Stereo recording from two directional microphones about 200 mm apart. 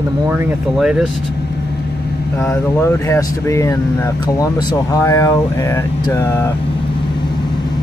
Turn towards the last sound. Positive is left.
turn(degrees=10)  # may be behind; listen again after turning